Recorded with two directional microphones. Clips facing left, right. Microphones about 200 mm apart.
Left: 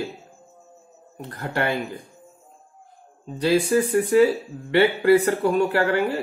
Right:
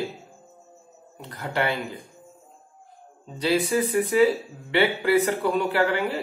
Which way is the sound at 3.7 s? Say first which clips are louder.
Left 4 dB; 50° left (ahead or behind).